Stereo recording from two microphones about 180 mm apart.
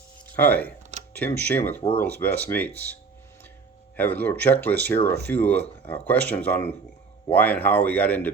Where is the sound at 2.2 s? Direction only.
10° left (ahead or behind).